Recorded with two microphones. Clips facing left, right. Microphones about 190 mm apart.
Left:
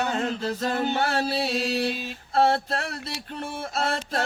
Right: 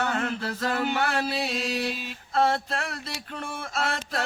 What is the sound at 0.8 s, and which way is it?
Mantra, 30° left (ahead or behind).